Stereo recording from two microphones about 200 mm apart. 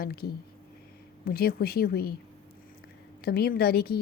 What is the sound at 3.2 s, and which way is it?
Speech, 50° left (ahead or behind).